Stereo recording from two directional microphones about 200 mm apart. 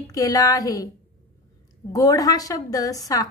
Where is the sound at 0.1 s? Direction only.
15° left (ahead or behind).